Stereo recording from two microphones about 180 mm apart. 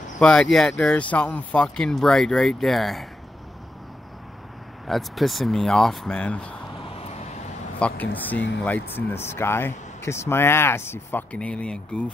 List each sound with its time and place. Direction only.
0.2 s speech: 5° left (ahead or behind)
4.8 s speech: centre (ahead or behind)
6.8 s vehicle: 35° left (ahead or behind)
7.8 s speech: 10° left (ahead or behind)
8.4 s speech: 80° left
8.6 s speech: 10° left (ahead or behind)